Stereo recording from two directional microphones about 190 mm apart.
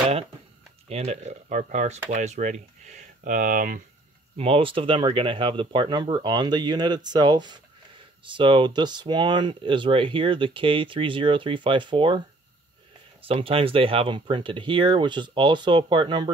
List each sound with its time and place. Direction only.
0.8 s speech: 35° right (ahead or behind)
4.4 s speech: 30° right (ahead or behind)
13.2 s speech: 30° right (ahead or behind)